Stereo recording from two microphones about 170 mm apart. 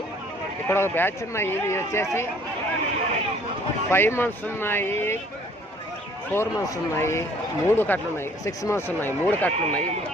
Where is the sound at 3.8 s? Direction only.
15° left (ahead or behind).